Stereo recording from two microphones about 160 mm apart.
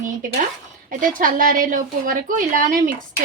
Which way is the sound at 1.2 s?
60° right (ahead or behind).